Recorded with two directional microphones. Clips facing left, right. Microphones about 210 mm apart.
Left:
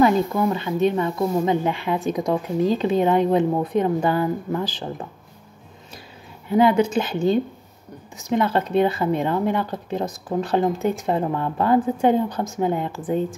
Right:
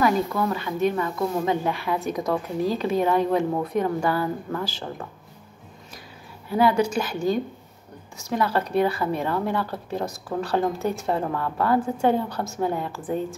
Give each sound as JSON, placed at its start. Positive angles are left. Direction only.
{"t": 0.0, "sound": "speech", "side_deg": 25}
{"t": 6.5, "sound": "speech", "side_deg": 20}